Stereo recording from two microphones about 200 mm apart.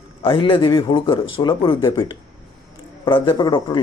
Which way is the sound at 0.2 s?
25° left (ahead or behind).